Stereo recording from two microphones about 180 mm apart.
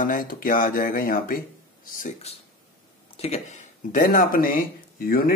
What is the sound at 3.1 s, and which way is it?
Speech, 35° left (ahead or behind).